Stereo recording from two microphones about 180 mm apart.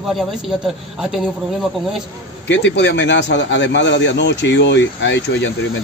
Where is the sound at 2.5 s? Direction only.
90° left.